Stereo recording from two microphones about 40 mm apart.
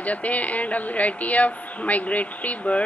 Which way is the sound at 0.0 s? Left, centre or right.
Left.